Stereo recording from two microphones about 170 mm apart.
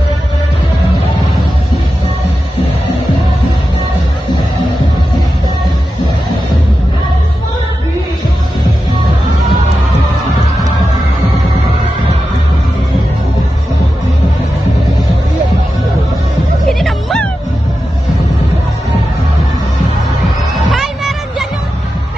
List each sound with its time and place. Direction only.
16.8 s music: 5° left (ahead or behind)
20.7 s music: centre (ahead or behind)